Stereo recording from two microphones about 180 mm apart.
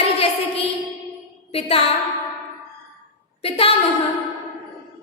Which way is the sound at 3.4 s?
30° left (ahead or behind).